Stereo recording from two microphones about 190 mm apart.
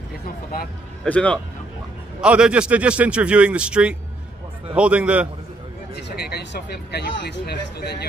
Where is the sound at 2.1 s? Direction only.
5° right (ahead or behind).